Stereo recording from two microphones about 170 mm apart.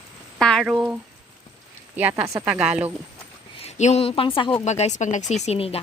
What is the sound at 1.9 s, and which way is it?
Speech, 10° right (ahead or behind).